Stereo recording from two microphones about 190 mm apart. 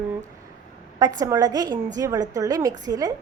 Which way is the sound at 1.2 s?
20° right (ahead or behind).